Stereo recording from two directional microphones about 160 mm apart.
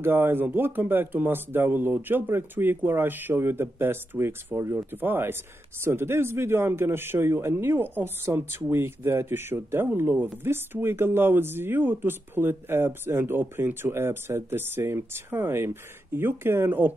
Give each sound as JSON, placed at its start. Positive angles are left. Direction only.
{"t": 0.0, "sound": "speech", "side_deg": -15}